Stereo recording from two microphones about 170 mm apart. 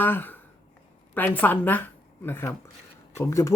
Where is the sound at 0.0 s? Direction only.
10° left (ahead or behind).